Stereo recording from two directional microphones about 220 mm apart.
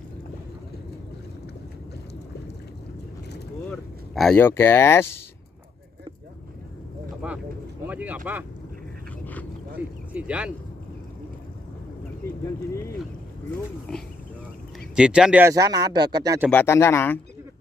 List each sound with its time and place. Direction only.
3.6 s a sound: centre (ahead or behind)
7.2 s vehicle: 5° right (ahead or behind)
7.8 s speech: 5° right (ahead or behind)
9.2 s dog: 5° left (ahead or behind)
9.8 s speech: 5° right (ahead or behind)
15.0 s speech: 5° right (ahead or behind)
16.4 s speech: 10° left (ahead or behind)